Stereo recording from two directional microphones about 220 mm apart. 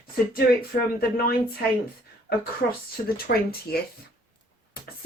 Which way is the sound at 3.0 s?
45° left (ahead or behind).